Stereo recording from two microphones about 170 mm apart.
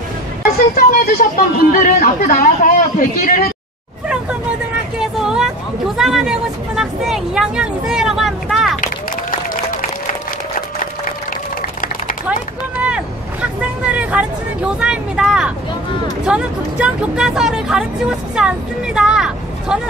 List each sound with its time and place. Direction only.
0.4 s speech: 55° left (ahead or behind)
4.1 s vehicle: 5° right (ahead or behind)
5.9 s a woman's voice: centre (ahead or behind)
12.7 s vehicle: 5° right (ahead or behind)
16.3 s speech: 5° right (ahead or behind)